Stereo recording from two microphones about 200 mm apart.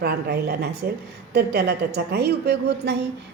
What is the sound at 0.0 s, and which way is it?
A woman's voice, 55° right (ahead or behind).